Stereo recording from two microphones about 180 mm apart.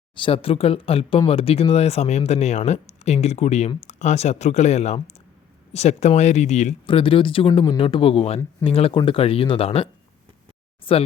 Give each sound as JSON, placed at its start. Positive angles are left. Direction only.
{"t": 0.2, "sound": "speech", "side_deg": 30}
{"t": 6.8, "sound": "speech", "side_deg": 30}